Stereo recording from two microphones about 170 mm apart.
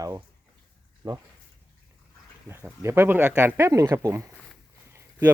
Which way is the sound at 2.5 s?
15° right (ahead or behind).